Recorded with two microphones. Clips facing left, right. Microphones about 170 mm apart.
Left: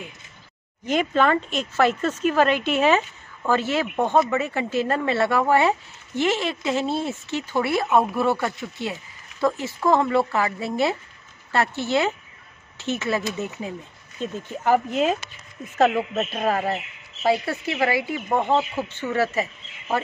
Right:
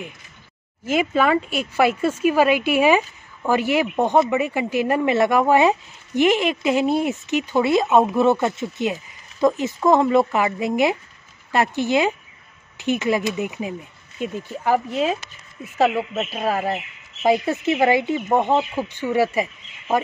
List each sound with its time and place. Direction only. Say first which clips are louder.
0.8 s speech: right 1 dB; 5° right (ahead or behind)